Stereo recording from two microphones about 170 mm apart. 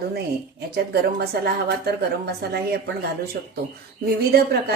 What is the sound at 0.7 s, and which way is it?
Speech, 70° right (ahead or behind).